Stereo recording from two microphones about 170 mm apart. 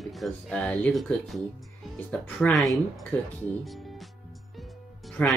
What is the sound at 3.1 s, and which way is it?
Speech, 10° left (ahead or behind).